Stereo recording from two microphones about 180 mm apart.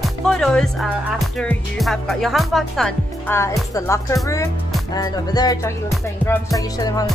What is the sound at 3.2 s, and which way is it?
Speech, 15° left (ahead or behind).